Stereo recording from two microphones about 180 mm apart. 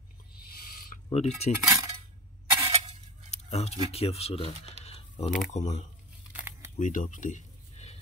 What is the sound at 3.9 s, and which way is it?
Speech, 35° left (ahead or behind).